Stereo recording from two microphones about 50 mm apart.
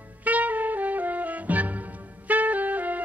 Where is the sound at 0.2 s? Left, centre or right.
Right.